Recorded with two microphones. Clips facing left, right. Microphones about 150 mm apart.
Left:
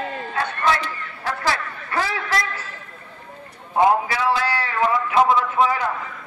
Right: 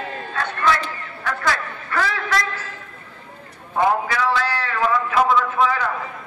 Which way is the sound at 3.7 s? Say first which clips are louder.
Left 2 dB; 25° left (ahead or behind).